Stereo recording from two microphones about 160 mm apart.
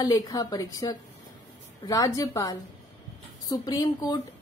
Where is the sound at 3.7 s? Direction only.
25° left (ahead or behind).